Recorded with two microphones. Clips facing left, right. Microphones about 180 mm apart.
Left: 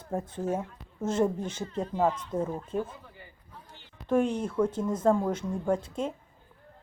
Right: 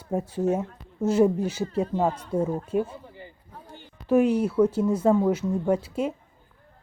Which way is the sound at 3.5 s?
50° right (ahead or behind).